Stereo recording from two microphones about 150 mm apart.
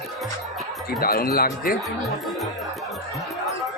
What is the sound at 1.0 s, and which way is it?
Speech, 85° left.